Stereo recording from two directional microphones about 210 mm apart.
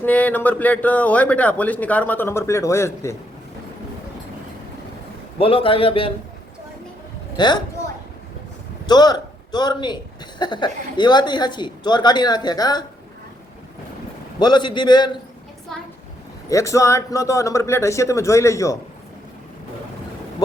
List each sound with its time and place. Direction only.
0.0 s a man's voice: 5° left (ahead or behind)
5.4 s speech: 25° left (ahead or behind)
7.3 s speech: 20° left (ahead or behind)
8.9 s speech: 20° left (ahead or behind)
14.3 s speech: 20° left (ahead or behind)
15.7 s a woman's voice: 5° left (ahead or behind)
16.5 s a man's voice: 15° left (ahead or behind)